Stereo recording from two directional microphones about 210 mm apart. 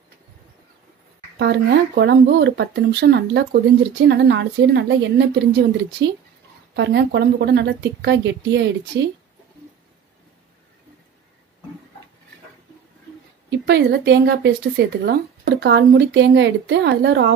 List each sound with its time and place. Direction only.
1.4 s a woman's voice: 55° right (ahead or behind)
13.5 s a woman's voice: 55° right (ahead or behind)